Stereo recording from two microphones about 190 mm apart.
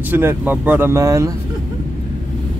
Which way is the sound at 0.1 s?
10° right (ahead or behind).